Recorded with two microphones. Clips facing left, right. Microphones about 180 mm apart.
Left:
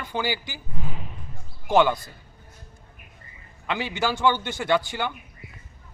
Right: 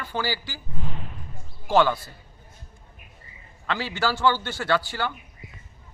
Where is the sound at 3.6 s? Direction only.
20° left (ahead or behind).